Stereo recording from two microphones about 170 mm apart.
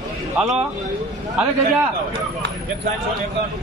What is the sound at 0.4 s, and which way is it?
Speech, 5° right (ahead or behind).